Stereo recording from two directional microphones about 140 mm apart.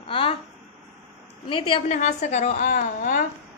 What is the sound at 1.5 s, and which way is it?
Speech, 40° left (ahead or behind).